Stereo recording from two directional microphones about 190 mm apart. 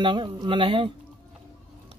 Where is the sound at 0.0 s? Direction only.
25° right (ahead or behind).